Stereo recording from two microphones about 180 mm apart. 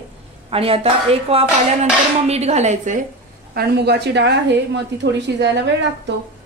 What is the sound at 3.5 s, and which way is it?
A woman's voice, 65° right (ahead or behind).